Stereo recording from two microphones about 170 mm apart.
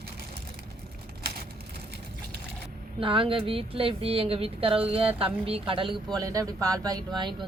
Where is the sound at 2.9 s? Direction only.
30° right (ahead or behind).